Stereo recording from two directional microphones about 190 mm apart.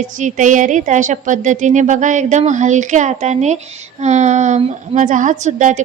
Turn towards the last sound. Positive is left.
turn(degrees=-40)  # may be behind; listen again after turning